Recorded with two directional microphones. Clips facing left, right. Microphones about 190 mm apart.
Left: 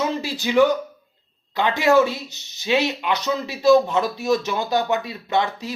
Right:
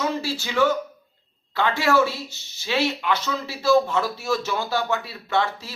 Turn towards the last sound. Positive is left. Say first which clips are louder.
# left 2 dB
turn(degrees=20)  # may be behind; listen again after turning